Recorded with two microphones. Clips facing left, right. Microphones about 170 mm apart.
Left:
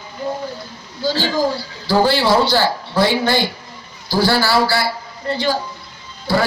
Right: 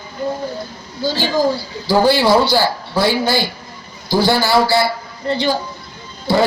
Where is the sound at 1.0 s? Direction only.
15° right (ahead or behind).